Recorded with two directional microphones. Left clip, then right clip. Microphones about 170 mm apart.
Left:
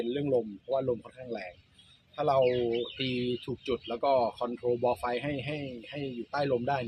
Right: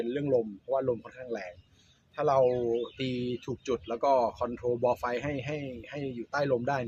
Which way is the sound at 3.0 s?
50° right (ahead or behind).